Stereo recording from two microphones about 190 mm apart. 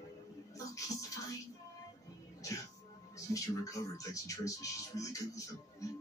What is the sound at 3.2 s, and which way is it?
Speech, 15° left (ahead or behind).